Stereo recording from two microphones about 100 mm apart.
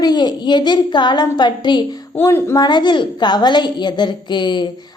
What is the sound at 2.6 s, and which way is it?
A woman's voice, 45° left (ahead or behind).